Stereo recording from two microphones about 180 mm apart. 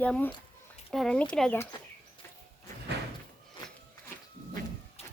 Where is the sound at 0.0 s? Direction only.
10° left (ahead or behind).